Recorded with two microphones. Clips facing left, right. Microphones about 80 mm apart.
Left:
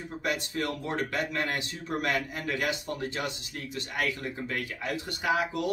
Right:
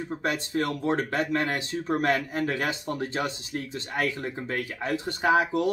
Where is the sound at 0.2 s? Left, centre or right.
Right.